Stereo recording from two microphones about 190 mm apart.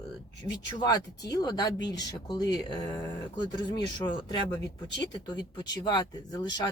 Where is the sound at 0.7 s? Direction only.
20° left (ahead or behind).